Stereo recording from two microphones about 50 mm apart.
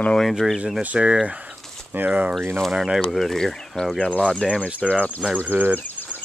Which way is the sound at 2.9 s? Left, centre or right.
Centre.